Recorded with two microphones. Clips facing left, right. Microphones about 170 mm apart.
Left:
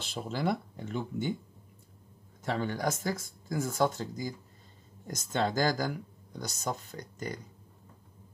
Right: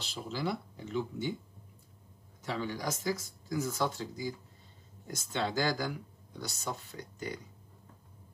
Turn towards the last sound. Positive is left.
turn(degrees=45)  # may be behind; listen again after turning